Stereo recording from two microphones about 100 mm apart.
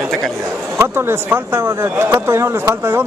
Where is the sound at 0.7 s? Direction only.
25° right (ahead or behind).